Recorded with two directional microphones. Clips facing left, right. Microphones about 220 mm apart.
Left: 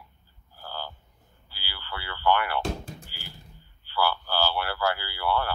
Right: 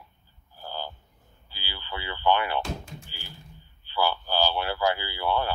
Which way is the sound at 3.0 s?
20° right (ahead or behind).